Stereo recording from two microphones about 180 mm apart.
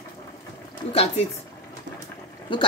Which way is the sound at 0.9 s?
35° left (ahead or behind).